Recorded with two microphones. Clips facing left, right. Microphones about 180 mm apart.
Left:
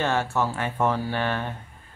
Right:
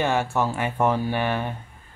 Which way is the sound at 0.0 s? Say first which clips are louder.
Right 2 dB; 15° right (ahead or behind).